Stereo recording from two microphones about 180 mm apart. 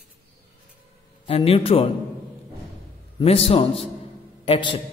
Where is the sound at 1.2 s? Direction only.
30° left (ahead or behind).